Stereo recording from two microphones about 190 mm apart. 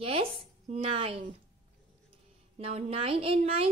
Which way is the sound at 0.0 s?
30° right (ahead or behind).